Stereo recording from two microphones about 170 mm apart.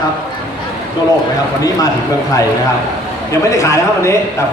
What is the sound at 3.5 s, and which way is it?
Speech, 20° left (ahead or behind).